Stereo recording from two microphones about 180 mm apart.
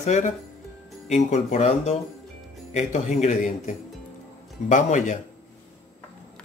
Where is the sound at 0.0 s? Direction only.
40° left (ahead or behind).